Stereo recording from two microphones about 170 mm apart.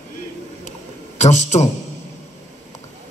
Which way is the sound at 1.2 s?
40° left (ahead or behind).